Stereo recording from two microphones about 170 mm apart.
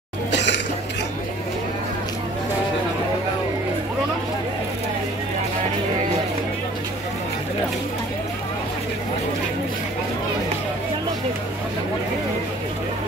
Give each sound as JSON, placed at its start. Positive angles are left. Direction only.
{"t": 0.3, "sound": "cough", "side_deg": 90}